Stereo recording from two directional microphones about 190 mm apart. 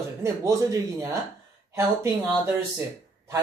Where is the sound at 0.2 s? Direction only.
15° right (ahead or behind).